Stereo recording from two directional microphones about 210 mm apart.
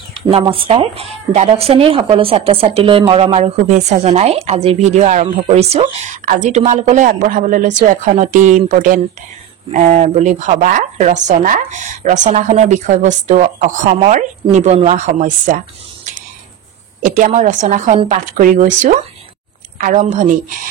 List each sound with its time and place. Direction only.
0.1 s speech: 25° right (ahead or behind)